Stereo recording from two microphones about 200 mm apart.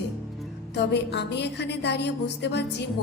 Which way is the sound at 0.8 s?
60° left (ahead or behind).